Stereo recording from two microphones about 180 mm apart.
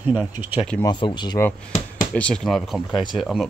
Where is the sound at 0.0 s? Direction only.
10° right (ahead or behind).